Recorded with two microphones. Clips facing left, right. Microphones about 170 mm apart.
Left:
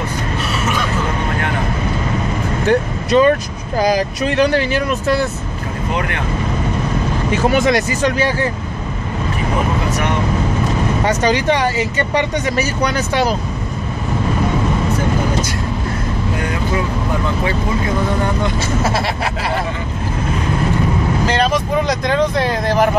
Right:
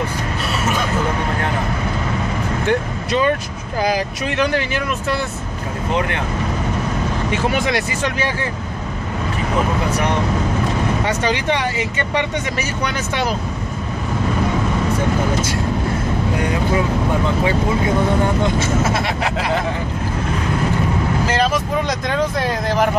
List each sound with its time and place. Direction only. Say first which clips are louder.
2.6 s speech: left 5 dB; 40° left (ahead or behind)
7.3 s speech: left 6 dB; 40° left (ahead or behind)
11.1 s speech: left 4 dB; 40° left (ahead or behind)
18.6 s speech: even; 35° left (ahead or behind)
21.3 s speech: left 3 dB; 5° right (ahead or behind)